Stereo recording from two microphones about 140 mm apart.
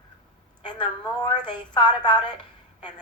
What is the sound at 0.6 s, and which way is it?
A woman's voice, 30° left (ahead or behind).